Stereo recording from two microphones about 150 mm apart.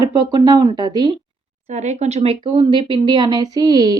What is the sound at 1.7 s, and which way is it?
A woman's voice, 50° right (ahead or behind).